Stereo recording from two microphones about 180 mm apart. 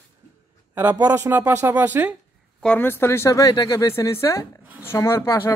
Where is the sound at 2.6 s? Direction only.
10° left (ahead or behind).